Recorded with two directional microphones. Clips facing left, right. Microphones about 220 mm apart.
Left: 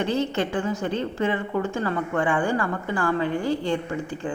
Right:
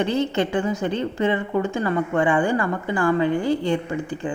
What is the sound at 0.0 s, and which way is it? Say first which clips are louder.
A woman's voice: right 3 dB; 15° right (ahead or behind).